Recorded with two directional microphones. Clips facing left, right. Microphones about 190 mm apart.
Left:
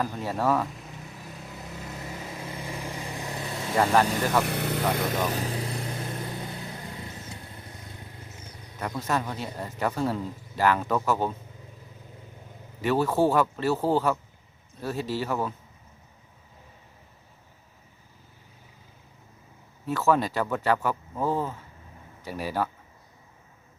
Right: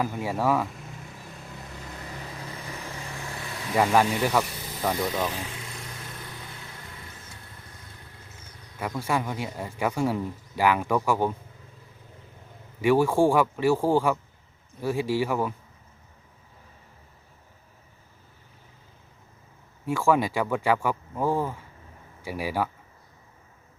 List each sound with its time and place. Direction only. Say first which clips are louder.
0.0 s vehicle: right 1 dB; 10° right (ahead or behind); by 3.7 s 20° left (ahead or behind)
3.8 s speech: right 1 dB; 10° right (ahead or behind)
4.4 s vehicle: left 11 dB; 65° left (ahead or behind)
5.4 s vehicle: left 7 dB; 35° left (ahead or behind)
9.0 s speech: right 1 dB; 10° right (ahead or behind)
12.8 s speech: right 3 dB; 10° right (ahead or behind)
19.8 s speech: right 1 dB; 10° right (ahead or behind)